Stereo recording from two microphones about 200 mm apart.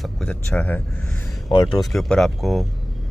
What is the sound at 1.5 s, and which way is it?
Speech, 25° left (ahead or behind).